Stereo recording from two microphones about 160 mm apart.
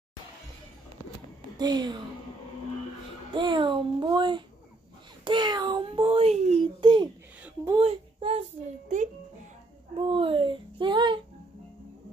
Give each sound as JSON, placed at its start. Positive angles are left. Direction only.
{"t": 1.6, "sound": "a child's voice", "side_deg": -25}
{"t": 3.3, "sound": "a child's voice", "side_deg": -30}
{"t": 6.8, "sound": "a child's voice", "side_deg": -30}
{"t": 9.9, "sound": "a child's voice", "side_deg": -35}